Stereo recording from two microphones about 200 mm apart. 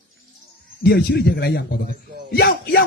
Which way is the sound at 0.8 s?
55° left (ahead or behind).